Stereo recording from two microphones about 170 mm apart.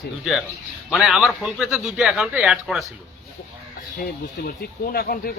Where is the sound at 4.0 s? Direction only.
60° left (ahead or behind).